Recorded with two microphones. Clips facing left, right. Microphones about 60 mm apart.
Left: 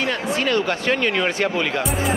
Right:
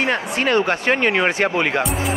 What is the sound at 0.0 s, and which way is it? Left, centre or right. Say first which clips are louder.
Speech: right 2 dB; right.